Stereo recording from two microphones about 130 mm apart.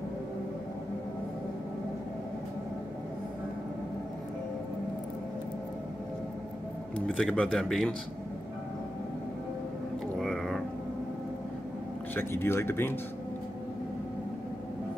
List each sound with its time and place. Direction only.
7.1 s speech: 10° left (ahead or behind)
10.1 s a sound: 5° left (ahead or behind)
12.2 s speech: 15° left (ahead or behind)